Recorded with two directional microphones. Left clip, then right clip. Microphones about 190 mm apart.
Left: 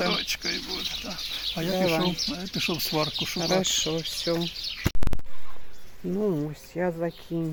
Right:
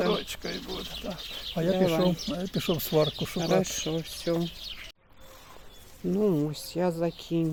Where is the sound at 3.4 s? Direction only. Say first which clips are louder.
Left 2 dB; 5° left (ahead or behind).